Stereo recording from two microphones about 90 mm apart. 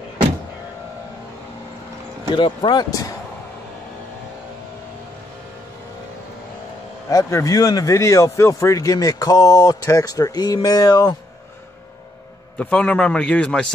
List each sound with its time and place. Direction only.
2.3 s speech: 60° left (ahead or behind)
7.1 s speech: 35° left (ahead or behind)
12.5 s a man's voice: 15° left (ahead or behind)